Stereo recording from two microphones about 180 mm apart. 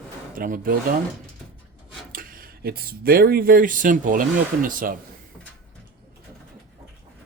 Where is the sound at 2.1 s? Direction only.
50° right (ahead or behind).